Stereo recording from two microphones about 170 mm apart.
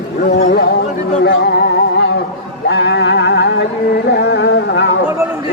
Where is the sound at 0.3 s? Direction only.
65° left (ahead or behind).